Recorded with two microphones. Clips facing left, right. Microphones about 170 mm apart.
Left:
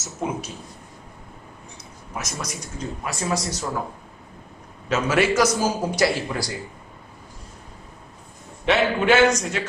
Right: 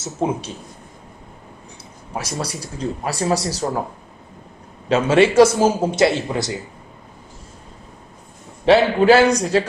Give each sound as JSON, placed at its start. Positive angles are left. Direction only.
{"t": 0.0, "sound": "a man's voice", "side_deg": -30}
{"t": 2.1, "sound": "speech", "side_deg": -30}
{"t": 4.8, "sound": "a man's voice", "side_deg": -30}
{"t": 8.6, "sound": "speech", "side_deg": -35}